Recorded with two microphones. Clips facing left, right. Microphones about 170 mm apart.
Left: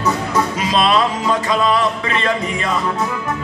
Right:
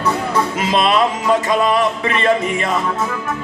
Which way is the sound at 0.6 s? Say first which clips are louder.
Right 1 dB; 25° right (ahead or behind).